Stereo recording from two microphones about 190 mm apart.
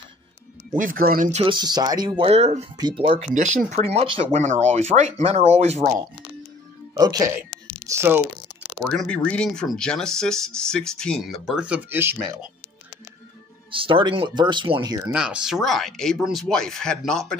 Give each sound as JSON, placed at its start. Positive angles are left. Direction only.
{"t": 0.7, "sound": "speech", "side_deg": -45}
{"t": 1.4, "sound": "speech", "side_deg": -25}
{"t": 6.9, "sound": "speech", "side_deg": -20}
{"t": 8.8, "sound": "speech", "side_deg": 5}
{"t": 13.7, "sound": "speech", "side_deg": -25}
{"t": 15.1, "sound": "speech", "side_deg": -5}